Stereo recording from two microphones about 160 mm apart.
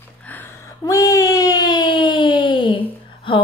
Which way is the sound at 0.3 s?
15° left (ahead or behind).